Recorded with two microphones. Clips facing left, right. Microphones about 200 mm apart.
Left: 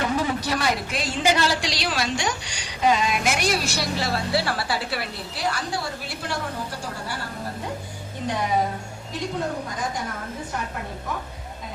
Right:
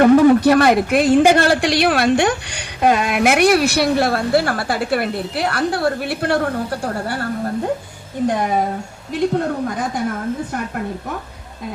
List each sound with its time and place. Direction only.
0.0 s speech: 60° right (ahead or behind)